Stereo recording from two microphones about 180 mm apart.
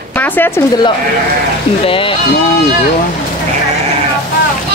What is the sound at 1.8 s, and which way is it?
Speech, 30° left (ahead or behind).